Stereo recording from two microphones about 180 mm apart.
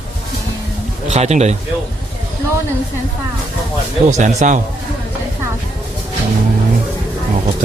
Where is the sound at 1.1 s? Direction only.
40° right (ahead or behind).